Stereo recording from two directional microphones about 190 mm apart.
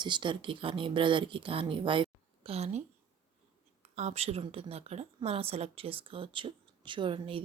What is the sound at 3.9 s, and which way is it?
A woman's voice, 35° right (ahead or behind).